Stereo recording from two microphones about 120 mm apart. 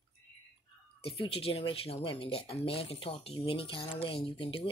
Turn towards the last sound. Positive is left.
turn(degrees=45)  # may be behind; listen again after turning